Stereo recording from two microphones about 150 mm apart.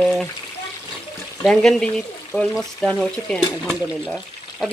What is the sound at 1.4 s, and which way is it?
Speech, 5° left (ahead or behind).